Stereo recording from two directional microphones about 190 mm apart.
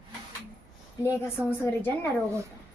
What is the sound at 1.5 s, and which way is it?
Speech, 10° left (ahead or behind).